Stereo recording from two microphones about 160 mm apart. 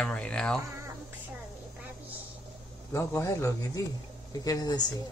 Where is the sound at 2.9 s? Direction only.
15° left (ahead or behind).